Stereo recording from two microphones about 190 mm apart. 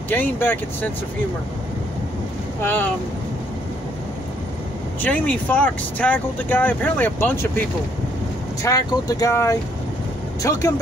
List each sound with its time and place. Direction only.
0.1 s speech: 10° left (ahead or behind)
2.6 s speech: 10° left (ahead or behind)
5.0 s speech: 10° left (ahead or behind)
8.6 s speech: 20° left (ahead or behind)